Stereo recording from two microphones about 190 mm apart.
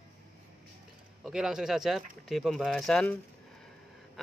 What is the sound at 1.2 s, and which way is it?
Speech, 5° right (ahead or behind).